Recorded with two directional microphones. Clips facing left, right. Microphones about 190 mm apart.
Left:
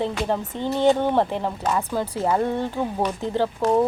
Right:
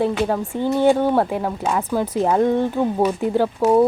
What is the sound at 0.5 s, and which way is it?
Speech, 10° right (ahead or behind).